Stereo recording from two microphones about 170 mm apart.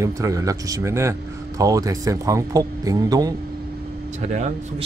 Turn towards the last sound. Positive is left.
turn(degrees=-40)  # may be behind; listen again after turning